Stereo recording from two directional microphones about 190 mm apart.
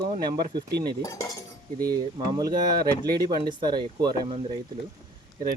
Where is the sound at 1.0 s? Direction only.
20° left (ahead or behind).